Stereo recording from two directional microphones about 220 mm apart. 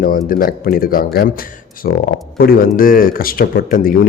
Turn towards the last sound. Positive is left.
turn(degrees=40)  # may be behind; listen again after turning